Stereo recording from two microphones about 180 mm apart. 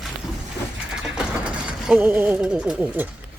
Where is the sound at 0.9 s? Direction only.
5° right (ahead or behind).